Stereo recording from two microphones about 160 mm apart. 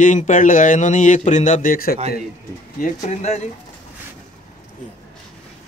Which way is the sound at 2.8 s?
45° left (ahead or behind).